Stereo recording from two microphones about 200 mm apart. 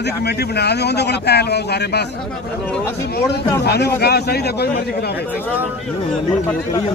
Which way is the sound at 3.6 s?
55° left (ahead or behind).